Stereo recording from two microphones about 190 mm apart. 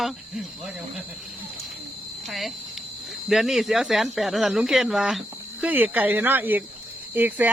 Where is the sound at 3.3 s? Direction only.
Centre (ahead or behind).